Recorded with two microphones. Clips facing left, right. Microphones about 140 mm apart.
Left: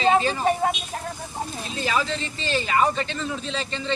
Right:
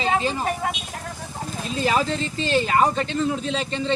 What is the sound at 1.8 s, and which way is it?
A man's voice, 40° right (ahead or behind).